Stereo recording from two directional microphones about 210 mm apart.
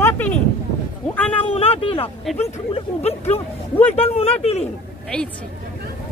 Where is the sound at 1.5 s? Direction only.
25° left (ahead or behind).